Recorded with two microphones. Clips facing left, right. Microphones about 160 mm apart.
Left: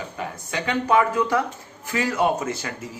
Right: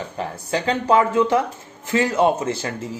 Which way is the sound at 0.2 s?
30° right (ahead or behind).